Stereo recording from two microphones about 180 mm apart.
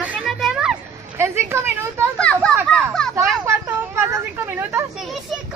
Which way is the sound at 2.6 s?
5° left (ahead or behind).